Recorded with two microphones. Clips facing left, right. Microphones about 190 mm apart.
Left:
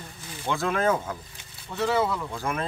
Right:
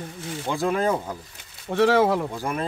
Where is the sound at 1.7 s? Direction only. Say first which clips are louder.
Right 6 dB; 80° right.